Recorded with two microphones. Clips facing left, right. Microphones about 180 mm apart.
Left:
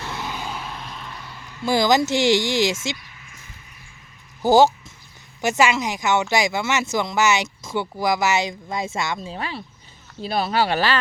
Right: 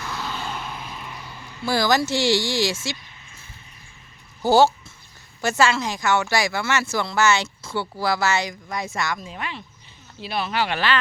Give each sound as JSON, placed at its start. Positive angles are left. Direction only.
{"t": 0.0, "sound": "vehicle", "side_deg": 20}
{"t": 1.6, "sound": "speech", "side_deg": 20}
{"t": 4.4, "sound": "speech", "side_deg": 15}